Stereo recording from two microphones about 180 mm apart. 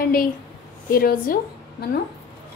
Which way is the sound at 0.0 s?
55° left (ahead or behind).